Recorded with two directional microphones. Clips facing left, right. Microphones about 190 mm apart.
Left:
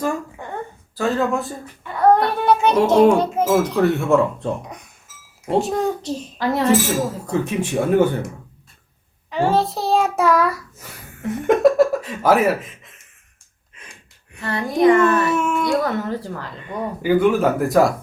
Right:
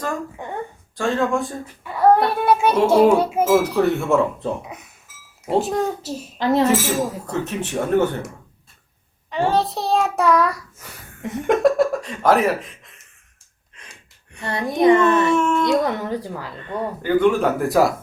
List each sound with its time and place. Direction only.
0.4 s a sound: 15° right (ahead or behind)
0.9 s a child's voice: 5° left (ahead or behind)
6.4 s a child's voice: 25° right (ahead or behind)
7.3 s speech: 10° left (ahead or behind)
9.3 s child singing: centre (ahead or behind)
11.4 s speech: centre (ahead or behind)
14.4 s a child's voice: 20° right (ahead or behind)
15.3 s speech: 5° left (ahead or behind)
15.7 s a woman's voice: 20° right (ahead or behind)
16.6 s a child's voice: 10° left (ahead or behind)